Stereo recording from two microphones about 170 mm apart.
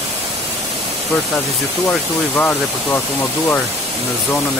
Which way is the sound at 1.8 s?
10° left (ahead or behind).